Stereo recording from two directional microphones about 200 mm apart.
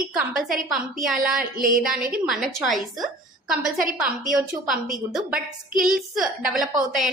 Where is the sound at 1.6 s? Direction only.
45° right (ahead or behind).